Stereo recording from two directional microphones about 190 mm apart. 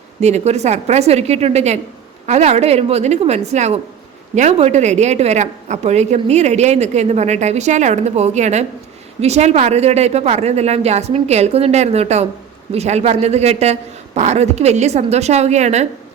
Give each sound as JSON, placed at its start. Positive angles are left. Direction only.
{"t": 0.2, "sound": "a woman's voice", "side_deg": -35}